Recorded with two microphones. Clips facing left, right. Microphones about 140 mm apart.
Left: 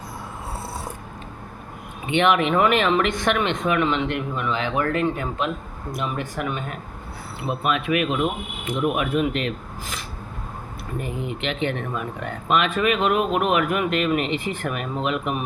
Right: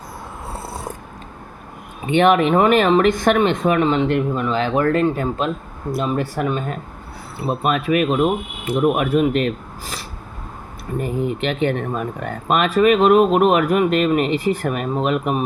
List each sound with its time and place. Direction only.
2.0 s speech: 40° right (ahead or behind)
11.0 s speech: 40° right (ahead or behind)